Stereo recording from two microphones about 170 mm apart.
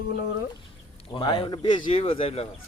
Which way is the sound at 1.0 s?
30° left (ahead or behind).